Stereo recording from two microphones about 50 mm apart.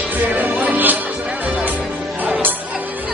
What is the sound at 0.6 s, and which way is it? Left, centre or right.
Music, right.